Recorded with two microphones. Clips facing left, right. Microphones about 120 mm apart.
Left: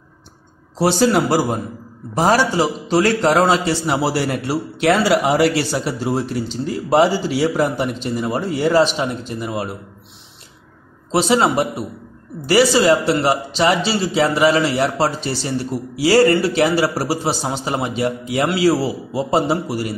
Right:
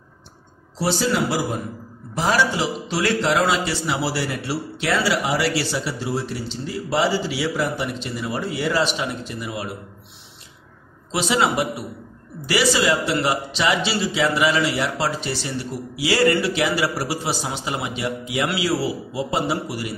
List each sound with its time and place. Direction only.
0.7 s a man's voice: 55° left (ahead or behind)
11.1 s a man's voice: 35° left (ahead or behind)